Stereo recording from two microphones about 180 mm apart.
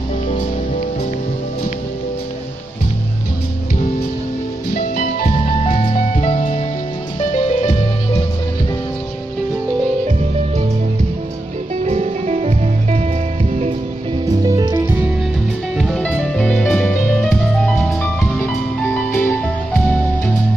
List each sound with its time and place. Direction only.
4.7 s music: 45° left (ahead or behind)
5.7 s music: 35° left (ahead or behind)
11.8 s music: 40° right (ahead or behind)
14.4 s music: 20° right (ahead or behind)
15.8 s music: 5° left (ahead or behind)